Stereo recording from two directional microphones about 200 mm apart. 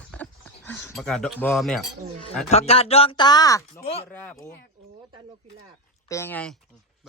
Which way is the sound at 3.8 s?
30° left (ahead or behind).